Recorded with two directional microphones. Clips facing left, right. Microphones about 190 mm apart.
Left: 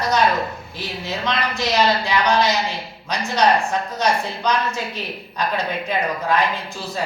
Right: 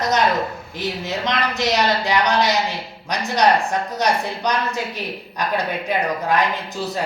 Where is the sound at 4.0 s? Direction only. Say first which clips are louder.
Even; 15° right (ahead or behind).